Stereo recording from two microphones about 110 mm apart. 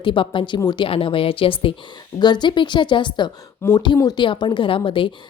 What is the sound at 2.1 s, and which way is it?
A woman's voice, 40° left (ahead or behind).